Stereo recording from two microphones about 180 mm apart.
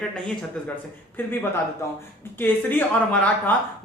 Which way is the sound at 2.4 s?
10° left (ahead or behind).